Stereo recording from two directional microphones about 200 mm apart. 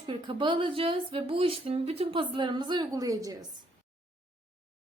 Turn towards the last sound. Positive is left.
turn(degrees=-15)  # may be behind; listen again after turning